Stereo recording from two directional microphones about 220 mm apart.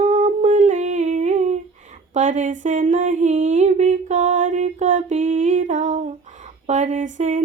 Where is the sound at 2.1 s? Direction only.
35° right (ahead or behind).